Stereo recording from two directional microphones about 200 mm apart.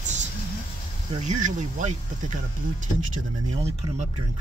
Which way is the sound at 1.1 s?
35° right (ahead or behind).